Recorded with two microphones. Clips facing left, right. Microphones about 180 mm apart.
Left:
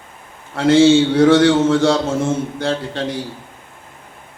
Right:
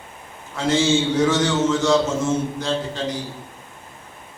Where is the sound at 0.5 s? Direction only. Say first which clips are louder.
Left 8 dB; 60° left (ahead or behind).